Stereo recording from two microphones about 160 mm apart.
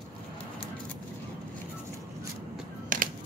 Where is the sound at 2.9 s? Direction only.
55° right (ahead or behind).